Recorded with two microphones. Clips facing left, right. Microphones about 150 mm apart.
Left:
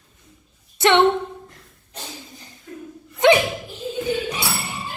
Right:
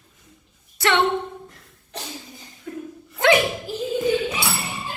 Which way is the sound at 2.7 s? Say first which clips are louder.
Right 5 dB; 90° right.